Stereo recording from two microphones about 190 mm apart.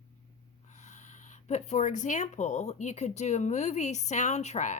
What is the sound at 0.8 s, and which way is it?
Speech, 40° left (ahead or behind).